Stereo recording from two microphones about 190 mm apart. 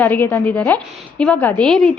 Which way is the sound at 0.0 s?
10° left (ahead or behind).